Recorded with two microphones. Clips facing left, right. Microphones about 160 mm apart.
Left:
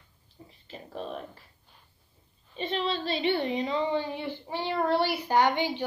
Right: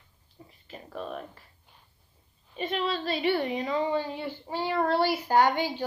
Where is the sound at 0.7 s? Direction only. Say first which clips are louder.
Even; 30° left (ahead or behind).